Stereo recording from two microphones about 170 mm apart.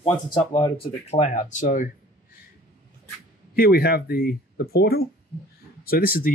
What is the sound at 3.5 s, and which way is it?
Speech, 65° left (ahead or behind).